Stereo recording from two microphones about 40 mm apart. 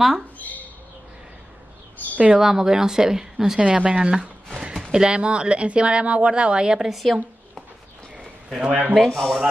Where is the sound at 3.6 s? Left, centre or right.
Right.